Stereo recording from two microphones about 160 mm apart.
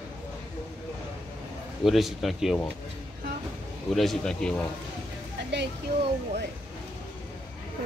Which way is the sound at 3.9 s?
Centre (ahead or behind).